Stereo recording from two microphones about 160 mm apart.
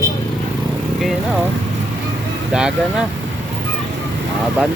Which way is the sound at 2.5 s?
5° right (ahead or behind).